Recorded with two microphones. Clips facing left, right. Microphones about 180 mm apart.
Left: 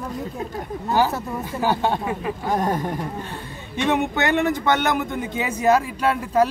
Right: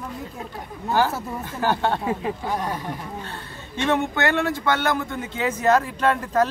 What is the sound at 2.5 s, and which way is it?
Speech, 45° left (ahead or behind).